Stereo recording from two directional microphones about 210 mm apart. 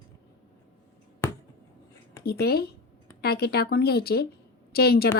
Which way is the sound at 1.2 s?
10° left (ahead or behind).